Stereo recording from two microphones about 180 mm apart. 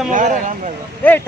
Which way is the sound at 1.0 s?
10° left (ahead or behind).